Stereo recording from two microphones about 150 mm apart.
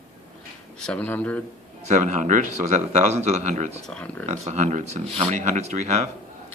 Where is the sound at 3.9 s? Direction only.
5° left (ahead or behind).